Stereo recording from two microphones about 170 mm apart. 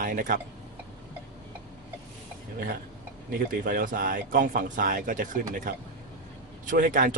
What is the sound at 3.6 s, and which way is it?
Speech, 55° right (ahead or behind).